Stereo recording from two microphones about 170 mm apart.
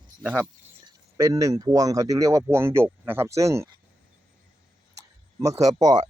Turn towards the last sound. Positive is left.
turn(degrees=-20)  # may be behind; listen again after turning